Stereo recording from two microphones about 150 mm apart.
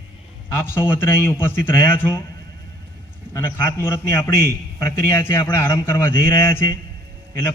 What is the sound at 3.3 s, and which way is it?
A man's voice, 15° left (ahead or behind).